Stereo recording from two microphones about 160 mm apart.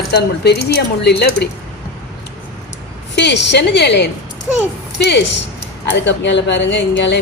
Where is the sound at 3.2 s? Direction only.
90° left.